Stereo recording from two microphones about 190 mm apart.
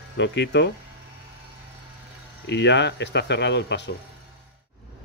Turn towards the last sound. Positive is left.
turn(degrees=65)  # may be behind; listen again after turning